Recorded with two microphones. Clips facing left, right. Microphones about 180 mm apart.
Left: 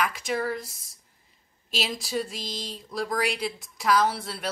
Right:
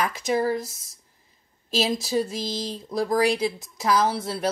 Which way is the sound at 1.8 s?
45° right (ahead or behind).